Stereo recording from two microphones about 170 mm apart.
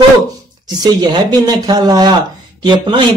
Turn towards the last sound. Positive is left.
turn(degrees=-30)  # may be behind; listen again after turning